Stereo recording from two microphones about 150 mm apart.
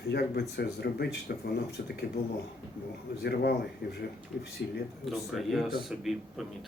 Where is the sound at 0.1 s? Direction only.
90° left.